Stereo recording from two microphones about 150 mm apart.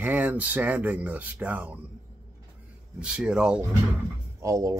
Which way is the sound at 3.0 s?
5° right (ahead or behind).